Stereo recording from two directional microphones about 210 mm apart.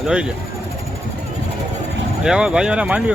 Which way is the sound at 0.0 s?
5° right (ahead or behind).